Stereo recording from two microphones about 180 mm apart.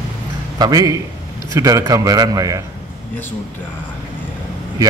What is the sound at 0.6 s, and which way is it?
A man's voice, 20° right (ahead or behind).